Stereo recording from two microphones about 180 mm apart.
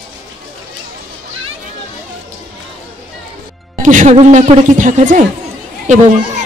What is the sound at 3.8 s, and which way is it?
A man's voice, 45° right (ahead or behind).